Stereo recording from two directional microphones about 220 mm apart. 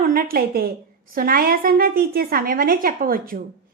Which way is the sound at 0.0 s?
45° right (ahead or behind).